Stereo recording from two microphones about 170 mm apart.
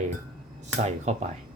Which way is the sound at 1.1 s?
40° right (ahead or behind).